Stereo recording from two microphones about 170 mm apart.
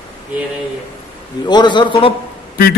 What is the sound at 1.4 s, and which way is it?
Speech, 25° left (ahead or behind).